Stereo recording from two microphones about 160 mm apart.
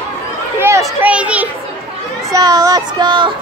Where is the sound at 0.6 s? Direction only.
20° right (ahead or behind).